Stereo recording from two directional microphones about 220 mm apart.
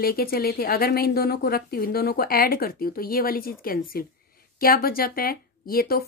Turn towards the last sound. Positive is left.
turn(degrees=45)  # may be behind; listen again after turning